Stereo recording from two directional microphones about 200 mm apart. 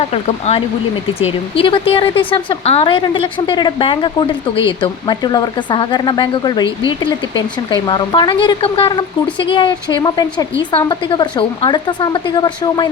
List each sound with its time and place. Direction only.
0.1 s speech: 30° left (ahead or behind)